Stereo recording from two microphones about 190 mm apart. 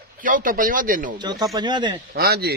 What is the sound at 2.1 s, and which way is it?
Speech, 55° right (ahead or behind).